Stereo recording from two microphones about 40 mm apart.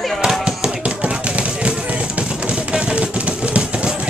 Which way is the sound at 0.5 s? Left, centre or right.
Right.